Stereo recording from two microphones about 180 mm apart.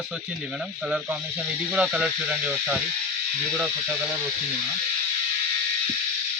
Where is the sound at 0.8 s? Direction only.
5° right (ahead or behind).